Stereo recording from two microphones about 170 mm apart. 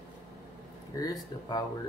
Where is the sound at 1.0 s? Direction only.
20° left (ahead or behind).